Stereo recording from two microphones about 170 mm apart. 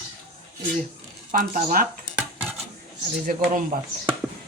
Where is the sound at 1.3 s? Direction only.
55° right (ahead or behind).